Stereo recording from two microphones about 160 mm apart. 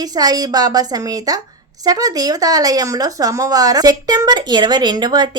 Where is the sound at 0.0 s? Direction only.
25° right (ahead or behind).